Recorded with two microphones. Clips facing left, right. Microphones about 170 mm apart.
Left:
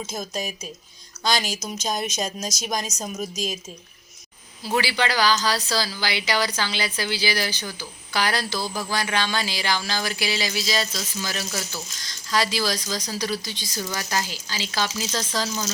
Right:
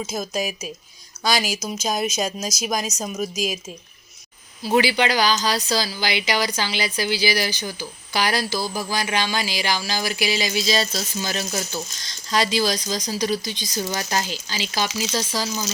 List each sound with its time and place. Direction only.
0.1 s speech: 5° right (ahead or behind)
4.6 s speech: 20° right (ahead or behind)